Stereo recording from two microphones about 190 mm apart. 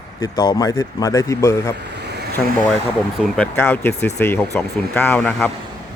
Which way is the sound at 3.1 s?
5° left (ahead or behind).